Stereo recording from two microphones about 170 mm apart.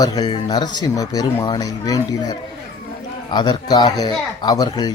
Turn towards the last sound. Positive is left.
turn(degrees=25)  # may be behind; listen again after turning